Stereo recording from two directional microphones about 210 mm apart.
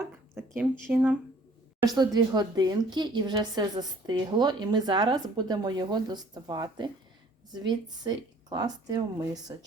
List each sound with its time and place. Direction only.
0.3 s speech: 10° right (ahead or behind)
1.8 s speech: 20° right (ahead or behind)